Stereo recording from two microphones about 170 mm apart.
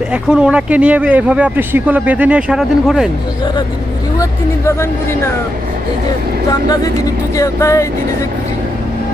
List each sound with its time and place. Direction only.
0.1 s speech: 5° right (ahead or behind)
4.2 s speech: 15° left (ahead or behind)
6.5 s speech: 20° left (ahead or behind)